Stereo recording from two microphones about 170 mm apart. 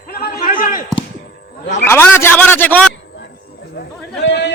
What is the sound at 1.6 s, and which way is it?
Speech, 85° left.